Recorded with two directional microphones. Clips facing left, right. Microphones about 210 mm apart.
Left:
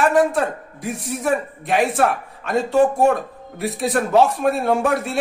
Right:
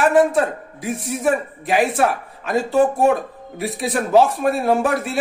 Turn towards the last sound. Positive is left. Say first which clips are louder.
# right 1 dB
turn(degrees=0)  # may be behind; listen again after turning